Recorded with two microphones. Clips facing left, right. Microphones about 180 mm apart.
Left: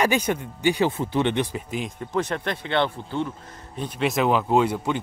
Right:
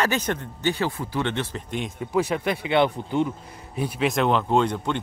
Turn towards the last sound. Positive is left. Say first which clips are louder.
# left 1 dB
turn(degrees=5)  # may be behind; listen again after turning